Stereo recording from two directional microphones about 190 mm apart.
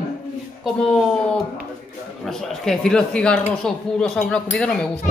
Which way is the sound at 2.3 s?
Centre (ahead or behind).